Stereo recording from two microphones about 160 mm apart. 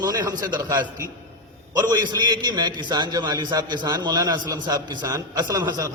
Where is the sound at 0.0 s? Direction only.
25° right (ahead or behind).